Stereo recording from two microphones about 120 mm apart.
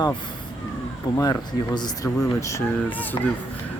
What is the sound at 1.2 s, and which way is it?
Speech, 35° left (ahead or behind).